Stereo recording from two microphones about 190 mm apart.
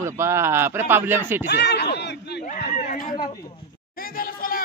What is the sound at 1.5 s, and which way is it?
Speech, 60° left (ahead or behind).